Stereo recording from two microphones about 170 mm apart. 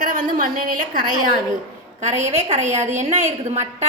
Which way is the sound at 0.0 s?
55° right (ahead or behind).